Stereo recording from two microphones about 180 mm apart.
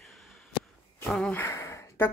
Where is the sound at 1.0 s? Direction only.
5° left (ahead or behind).